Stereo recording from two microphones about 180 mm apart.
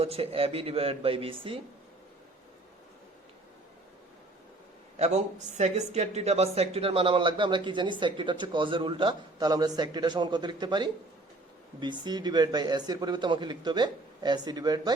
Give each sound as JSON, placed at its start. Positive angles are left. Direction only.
{"t": 0.0, "sound": "a man's voice", "side_deg": -35}
{"t": 4.9, "sound": "speech", "side_deg": -35}